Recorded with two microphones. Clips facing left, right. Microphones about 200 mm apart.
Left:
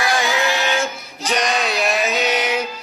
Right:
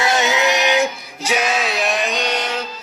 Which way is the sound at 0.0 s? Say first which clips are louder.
Right 2 dB; 20° right (ahead or behind).